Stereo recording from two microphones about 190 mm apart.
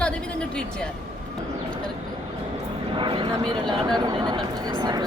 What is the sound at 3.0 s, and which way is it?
Speech, 25° right (ahead or behind).